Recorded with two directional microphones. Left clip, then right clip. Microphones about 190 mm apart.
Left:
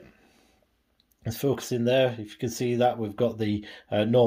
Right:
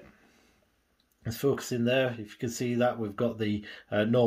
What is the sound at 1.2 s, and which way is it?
Speech, 20° left (ahead or behind).